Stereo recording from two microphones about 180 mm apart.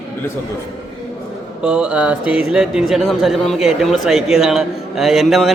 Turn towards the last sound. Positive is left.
turn(degrees=0)  # may be behind; listen again after turning